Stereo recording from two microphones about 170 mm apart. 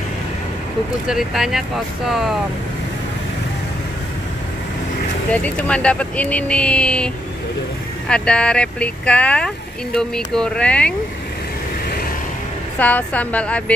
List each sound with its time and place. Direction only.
1.0 s speech: centre (ahead or behind)
5.3 s speech: 10° left (ahead or behind)
8.1 s speech: 5° left (ahead or behind)
12.7 s speech: 10° left (ahead or behind)